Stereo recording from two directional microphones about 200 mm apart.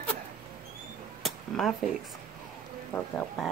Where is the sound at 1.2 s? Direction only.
Centre (ahead or behind).